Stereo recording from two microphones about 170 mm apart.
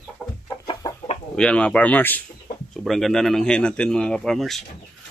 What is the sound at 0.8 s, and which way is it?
Chicken, 20° left (ahead or behind).